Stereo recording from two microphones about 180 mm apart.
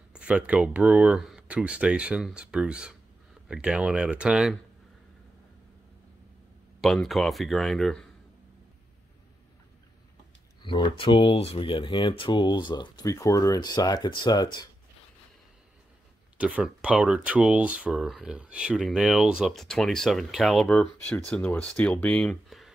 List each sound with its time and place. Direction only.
0.1 s speech: 5° right (ahead or behind)
6.8 s speech: centre (ahead or behind)
10.6 s speech: 25° left (ahead or behind)
16.3 s speech: 5° right (ahead or behind)